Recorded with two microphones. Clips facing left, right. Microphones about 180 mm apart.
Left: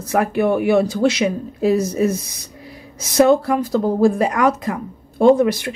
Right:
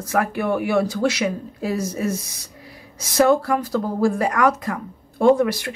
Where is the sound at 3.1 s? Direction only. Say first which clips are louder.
Left 3 dB; 20° left (ahead or behind).